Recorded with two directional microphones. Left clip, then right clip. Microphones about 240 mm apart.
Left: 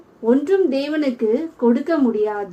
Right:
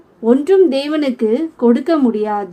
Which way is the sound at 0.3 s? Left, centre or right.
Right.